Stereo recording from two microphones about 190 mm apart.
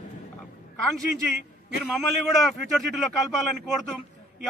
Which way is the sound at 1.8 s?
Centre (ahead or behind).